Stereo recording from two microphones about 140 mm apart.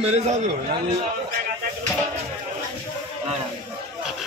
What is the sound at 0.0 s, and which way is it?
Speech, 50° right (ahead or behind).